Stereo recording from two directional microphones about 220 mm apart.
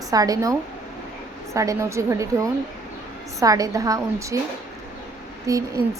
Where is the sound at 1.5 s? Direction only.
15° right (ahead or behind).